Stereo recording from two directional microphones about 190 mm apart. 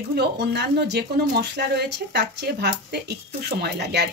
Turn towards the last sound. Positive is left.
turn(degrees=-60)  # may be behind; listen again after turning